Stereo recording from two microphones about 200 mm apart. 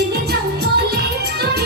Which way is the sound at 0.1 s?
55° right (ahead or behind).